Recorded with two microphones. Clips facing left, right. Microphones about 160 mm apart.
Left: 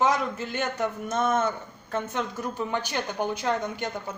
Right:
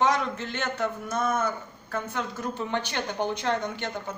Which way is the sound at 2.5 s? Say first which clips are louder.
Left 1 dB; 10° left (ahead or behind).